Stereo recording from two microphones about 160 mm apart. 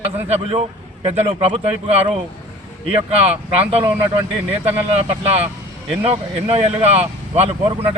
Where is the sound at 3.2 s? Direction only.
40° right (ahead or behind).